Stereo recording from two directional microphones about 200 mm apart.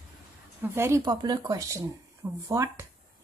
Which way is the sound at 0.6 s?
10° right (ahead or behind).